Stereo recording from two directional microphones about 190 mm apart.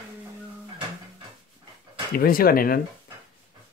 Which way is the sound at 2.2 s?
50° left (ahead or behind).